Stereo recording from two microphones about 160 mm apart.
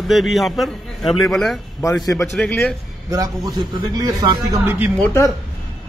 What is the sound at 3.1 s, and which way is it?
A man's voice, 25° right (ahead or behind).